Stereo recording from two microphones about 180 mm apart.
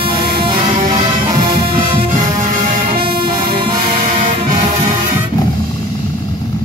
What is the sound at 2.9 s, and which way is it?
Music, 30° right (ahead or behind).